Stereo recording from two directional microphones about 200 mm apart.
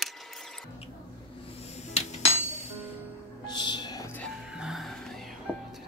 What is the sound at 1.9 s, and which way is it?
Hammer, 30° left (ahead or behind).